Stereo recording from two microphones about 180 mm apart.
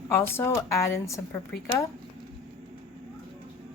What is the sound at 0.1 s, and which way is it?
Speech, 15° left (ahead or behind).